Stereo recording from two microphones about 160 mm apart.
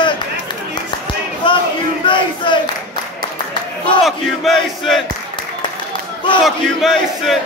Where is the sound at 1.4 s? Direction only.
30° left (ahead or behind).